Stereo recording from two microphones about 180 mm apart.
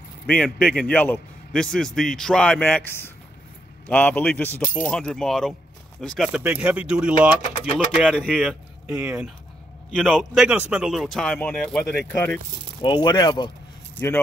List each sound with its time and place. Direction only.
0.3 s a man's voice: 5° left (ahead or behind)
4.8 s a man's voice: 5° left (ahead or behind)
12.8 s speech: 25° left (ahead or behind)
13.9 s speech: 15° left (ahead or behind)